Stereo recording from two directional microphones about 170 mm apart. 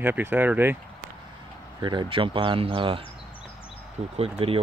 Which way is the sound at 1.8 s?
30° right (ahead or behind).